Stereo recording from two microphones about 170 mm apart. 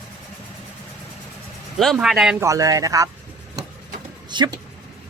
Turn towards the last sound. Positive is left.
turn(degrees=-25)  # may be behind; listen again after turning